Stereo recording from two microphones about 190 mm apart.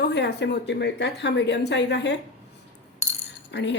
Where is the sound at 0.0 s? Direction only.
65° left (ahead or behind).